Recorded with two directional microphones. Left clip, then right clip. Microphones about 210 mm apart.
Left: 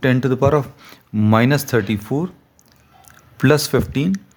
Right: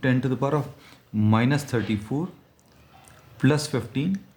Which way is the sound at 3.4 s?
45° left (ahead or behind).